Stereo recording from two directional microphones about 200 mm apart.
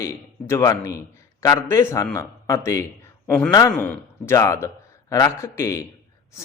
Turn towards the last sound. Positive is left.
turn(degrees=15)  # may be behind; listen again after turning